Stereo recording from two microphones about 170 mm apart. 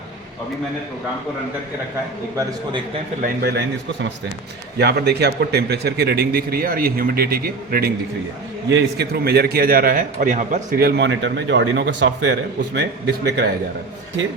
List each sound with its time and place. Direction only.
3.2 s a man's voice: 60° right (ahead or behind)
4.8 s a man's voice: 75° right (ahead or behind); by 10.8 s 50° right (ahead or behind)
10.8 s a man's voice: 85° right